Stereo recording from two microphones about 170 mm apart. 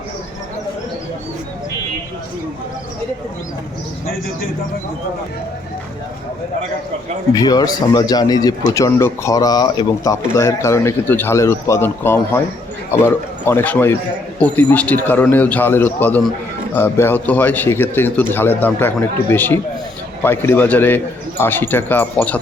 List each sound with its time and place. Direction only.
7.3 s a man's voice: 20° left (ahead or behind)